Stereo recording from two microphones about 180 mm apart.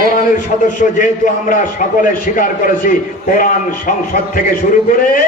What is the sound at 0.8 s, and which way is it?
Speech, 50° left (ahead or behind).